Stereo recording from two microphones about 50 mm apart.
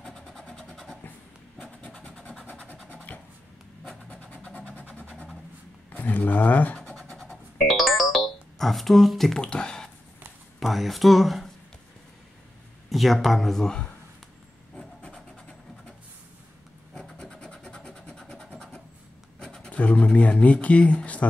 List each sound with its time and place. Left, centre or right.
0.0 s vehicle: centre
2.0 s vehicle: left
3.1 s writing: left
4.1 s vehicle: left
5.9 s speech: left
6.8 s scratch: centre
7.5 s music: centre
9.4 s speech: centre
10.6 s speech: centre
12.9 s speech: centre
13.6 s speech: centre
17.2 s scratch: centre
18.1 s a sound: centre
19.4 s speech: centre